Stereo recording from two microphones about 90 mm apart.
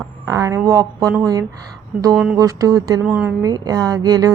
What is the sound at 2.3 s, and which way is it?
A woman's voice, 40° right (ahead or behind).